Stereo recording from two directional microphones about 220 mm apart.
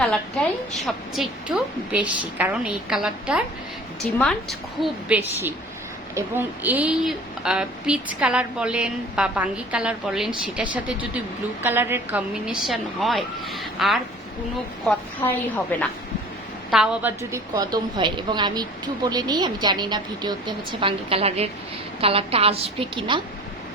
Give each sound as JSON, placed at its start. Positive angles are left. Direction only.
{"t": 0.9, "sound": "a woman's voice", "side_deg": 0}
{"t": 16.7, "sound": "a woman's voice", "side_deg": -5}